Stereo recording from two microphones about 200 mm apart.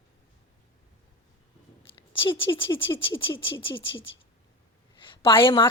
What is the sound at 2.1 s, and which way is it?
Speech, 25° left (ahead or behind).